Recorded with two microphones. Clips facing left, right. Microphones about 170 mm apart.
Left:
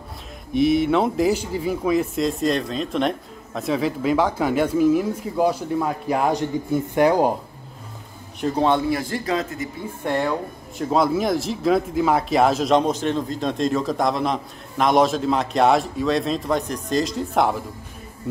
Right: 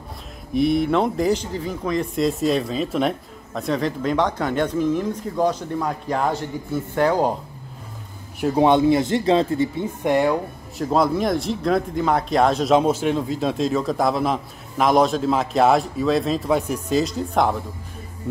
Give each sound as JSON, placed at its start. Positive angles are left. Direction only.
{"t": 0.6, "sound": "speech", "side_deg": 0}
{"t": 8.4, "sound": "speech", "side_deg": -15}
{"t": 10.0, "sound": "speech", "side_deg": -15}
{"t": 10.8, "sound": "speech", "side_deg": 0}